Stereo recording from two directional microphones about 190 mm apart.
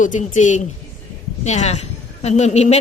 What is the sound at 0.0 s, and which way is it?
A woman's voice, 40° left (ahead or behind).